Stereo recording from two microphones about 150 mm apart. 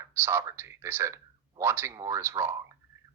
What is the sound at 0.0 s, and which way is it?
Speech, 15° right (ahead or behind).